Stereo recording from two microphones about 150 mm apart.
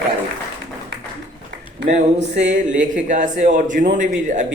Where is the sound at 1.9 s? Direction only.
55° right (ahead or behind).